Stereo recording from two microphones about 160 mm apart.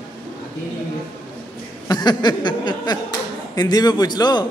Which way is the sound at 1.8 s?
25° left (ahead or behind).